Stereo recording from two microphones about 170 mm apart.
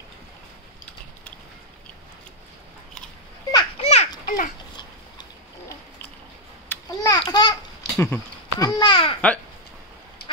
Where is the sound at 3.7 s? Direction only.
40° left (ahead or behind).